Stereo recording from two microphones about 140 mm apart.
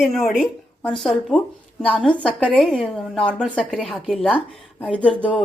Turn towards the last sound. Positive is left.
turn(degrees=10)  # may be behind; listen again after turning